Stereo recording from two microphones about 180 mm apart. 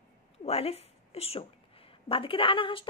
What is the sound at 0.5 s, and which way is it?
A woman's voice, 35° left (ahead or behind).